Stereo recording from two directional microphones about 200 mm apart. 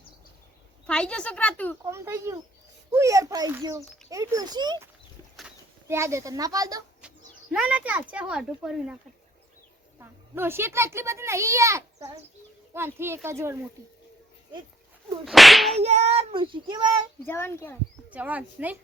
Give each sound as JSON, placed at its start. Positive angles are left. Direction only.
{"t": 0.9, "sound": "speech", "side_deg": 5}
{"t": 1.8, "sound": "a child's voice", "side_deg": -15}
{"t": 5.9, "sound": "a child's voice", "side_deg": -15}
{"t": 7.5, "sound": "speech", "side_deg": -5}
{"t": 10.0, "sound": "a child's voice", "side_deg": -10}
{"t": 15.2, "sound": "speech", "side_deg": 0}
{"t": 15.8, "sound": "speech", "side_deg": -30}
{"t": 17.2, "sound": "speech", "side_deg": 10}
{"t": 18.1, "sound": "a child's voice", "side_deg": -5}